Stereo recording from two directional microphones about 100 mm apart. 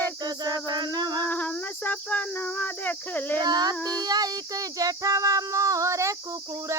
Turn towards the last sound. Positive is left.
turn(degrees=-30)  # may be behind; listen again after turning